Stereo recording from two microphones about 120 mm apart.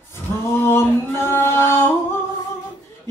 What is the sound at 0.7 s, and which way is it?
Singing, 20° left (ahead or behind).